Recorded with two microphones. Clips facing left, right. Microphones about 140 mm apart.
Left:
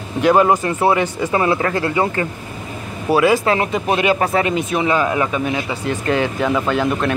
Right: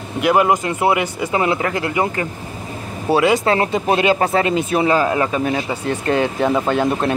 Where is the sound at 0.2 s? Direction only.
15° right (ahead or behind).